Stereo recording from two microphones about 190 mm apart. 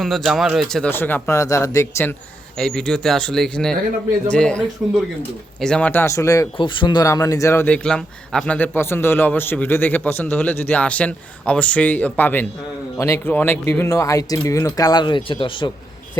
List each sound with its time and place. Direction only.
0.0 s speech: centre (ahead or behind)
2.6 s speech: 5° left (ahead or behind); by 15.7 s 25° left (ahead or behind)